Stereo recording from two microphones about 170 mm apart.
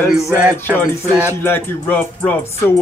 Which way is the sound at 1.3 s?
15° left (ahead or behind).